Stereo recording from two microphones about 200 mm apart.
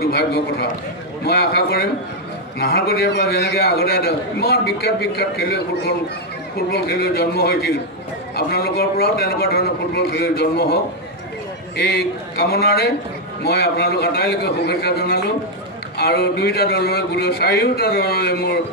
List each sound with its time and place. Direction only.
0.0 s a man's voice: 55° left (ahead or behind)